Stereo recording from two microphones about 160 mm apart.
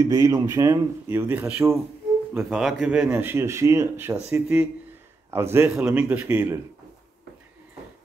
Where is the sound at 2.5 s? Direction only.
Centre (ahead or behind).